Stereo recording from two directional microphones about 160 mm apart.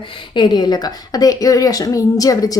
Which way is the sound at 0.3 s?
25° left (ahead or behind).